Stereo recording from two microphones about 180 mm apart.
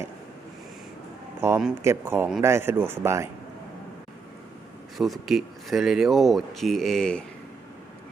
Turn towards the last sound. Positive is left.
turn(degrees=5)  # may be behind; listen again after turning